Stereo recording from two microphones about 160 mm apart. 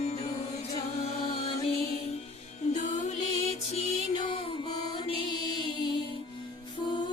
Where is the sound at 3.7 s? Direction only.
40° left (ahead or behind).